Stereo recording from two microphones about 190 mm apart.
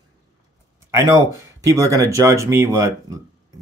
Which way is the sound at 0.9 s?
15° right (ahead or behind).